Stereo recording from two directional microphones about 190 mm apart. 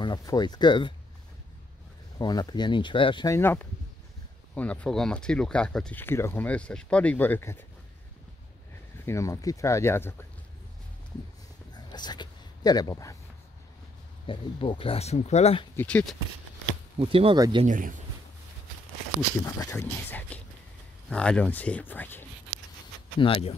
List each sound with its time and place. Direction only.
0.0 s speech: 20° left (ahead or behind)
2.1 s speech: 20° left (ahead or behind)
3.3 s speech: 10° left (ahead or behind)
9.0 s speech: 15° left (ahead or behind)
11.7 s dog: 20° left (ahead or behind)
14.2 s speech: 25° left (ahead or behind)
15.7 s speech: 10° left (ahead or behind)
17.0 s speech: 30° right (ahead or behind)
17.6 s speech: 45° right (ahead or behind)
19.4 s speech: 15° left (ahead or behind)
23.2 s speech: 25° left (ahead or behind)